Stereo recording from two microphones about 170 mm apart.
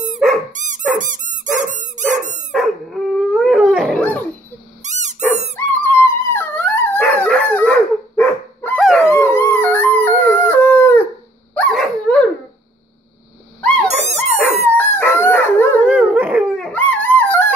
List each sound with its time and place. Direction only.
0.5 s dog: 45° right (ahead or behind)
2.5 s dog: centre (ahead or behind)
4.8 s dog: 45° right (ahead or behind)
5.7 s dog: 10° left (ahead or behind)
8.7 s dog: centre (ahead or behind)
9.0 s howl: 15° left (ahead or behind)
11.5 s dog: 5° left (ahead or behind)
13.6 s dog: 5° left (ahead or behind)
13.8 s dog: 40° right (ahead or behind)
14.7 s dog: 10° left (ahead or behind)
15.8 s dog: 10° right (ahead or behind)
16.5 s dog: 5° left (ahead or behind)